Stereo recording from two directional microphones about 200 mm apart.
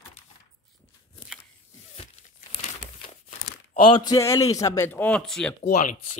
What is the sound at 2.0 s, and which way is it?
Crumpling, 30° left (ahead or behind).